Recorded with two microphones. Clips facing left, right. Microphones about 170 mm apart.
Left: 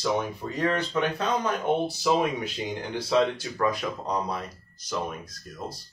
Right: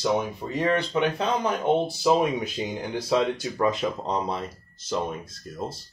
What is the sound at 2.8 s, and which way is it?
Speech, 20° right (ahead or behind).